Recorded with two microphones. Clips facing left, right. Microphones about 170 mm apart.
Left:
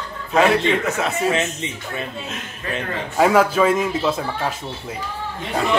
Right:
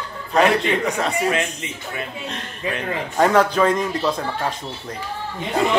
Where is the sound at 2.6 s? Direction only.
15° right (ahead or behind).